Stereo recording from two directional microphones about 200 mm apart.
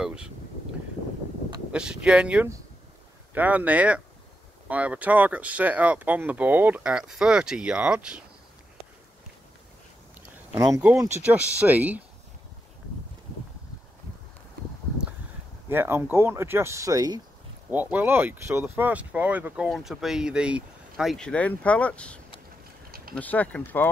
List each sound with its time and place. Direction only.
0.0 s speech: 5° right (ahead or behind)
1.7 s speech: 5° right (ahead or behind)
10.3 s speech: 10° right (ahead or behind)
15.7 s speech: 10° right (ahead or behind); by 22.2 s 5° left (ahead or behind)
22.8 s a sound: 45° right (ahead or behind)
23.1 s speech: 10° left (ahead or behind)